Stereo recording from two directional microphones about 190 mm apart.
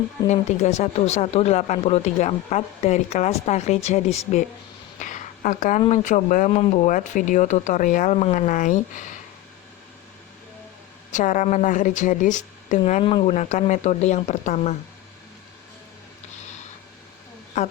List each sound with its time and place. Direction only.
0.3 s speech: 40° left (ahead or behind)
4.9 s a sound: 40° left (ahead or behind)
5.9 s speech: 40° left (ahead or behind)
11.1 s speech: 40° left (ahead or behind)
17.5 s speech: 35° left (ahead or behind)